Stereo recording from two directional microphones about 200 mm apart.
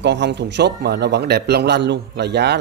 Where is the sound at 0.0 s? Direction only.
60° right (ahead or behind).